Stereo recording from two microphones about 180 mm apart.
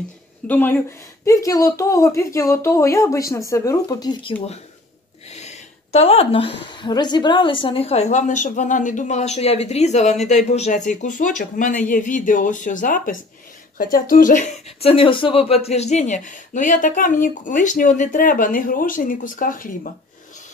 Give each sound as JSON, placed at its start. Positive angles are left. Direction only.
{"t": 0.5, "sound": "a woman's voice", "side_deg": 10}